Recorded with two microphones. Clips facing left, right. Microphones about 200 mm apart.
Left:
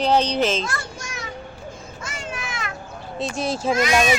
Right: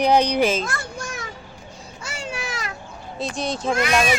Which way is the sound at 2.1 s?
35° right (ahead or behind).